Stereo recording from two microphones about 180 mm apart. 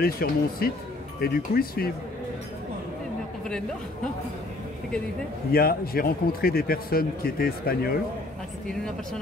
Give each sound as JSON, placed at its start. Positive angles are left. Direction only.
{"t": 0.0, "sound": "a man's voice", "side_deg": 55}
{"t": 5.5, "sound": "a man's voice", "side_deg": 55}